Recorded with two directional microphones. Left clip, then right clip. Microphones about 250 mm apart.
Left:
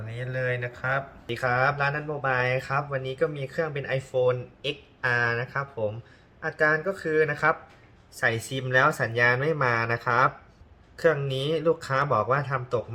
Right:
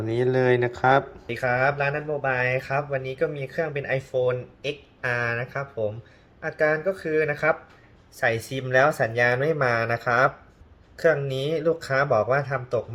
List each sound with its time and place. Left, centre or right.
0.1 s speech: right
1.3 s speech: centre